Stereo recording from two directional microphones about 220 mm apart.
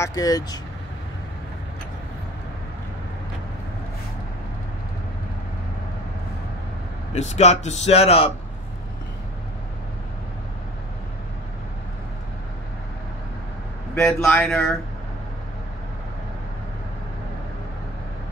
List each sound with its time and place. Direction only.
0.0 s speech: 15° left (ahead or behind)
7.2 s speech: 30° left (ahead or behind)
13.9 s speech: 5° left (ahead or behind)